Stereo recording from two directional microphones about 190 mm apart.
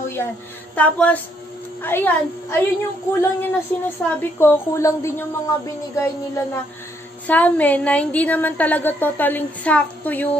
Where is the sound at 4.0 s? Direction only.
5° left (ahead or behind).